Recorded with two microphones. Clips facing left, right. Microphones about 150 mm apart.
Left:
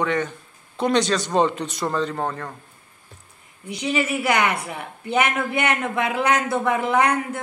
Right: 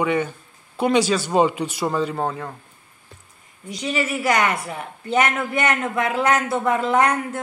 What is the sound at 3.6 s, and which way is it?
Speech, 15° left (ahead or behind).